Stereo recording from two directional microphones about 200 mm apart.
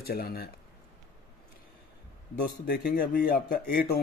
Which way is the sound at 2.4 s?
50° left (ahead or behind).